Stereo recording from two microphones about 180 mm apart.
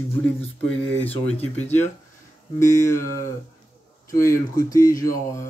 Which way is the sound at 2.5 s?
45° left (ahead or behind).